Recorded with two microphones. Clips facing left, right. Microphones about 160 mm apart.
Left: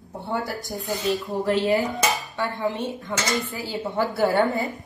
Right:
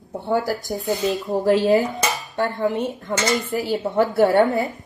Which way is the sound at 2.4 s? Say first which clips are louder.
Right 7 dB; 55° right (ahead or behind).